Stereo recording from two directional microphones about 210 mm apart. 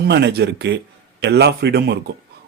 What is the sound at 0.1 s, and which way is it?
Speech, 55° right (ahead or behind).